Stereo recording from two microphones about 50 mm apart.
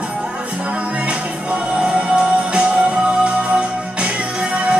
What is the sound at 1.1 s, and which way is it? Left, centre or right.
Music, right.